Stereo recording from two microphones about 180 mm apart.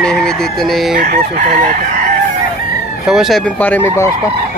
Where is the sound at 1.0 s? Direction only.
45° right (ahead or behind).